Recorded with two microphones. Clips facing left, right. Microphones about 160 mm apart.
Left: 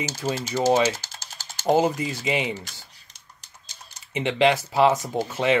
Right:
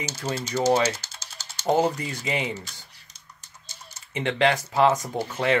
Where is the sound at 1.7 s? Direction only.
20° left (ahead or behind).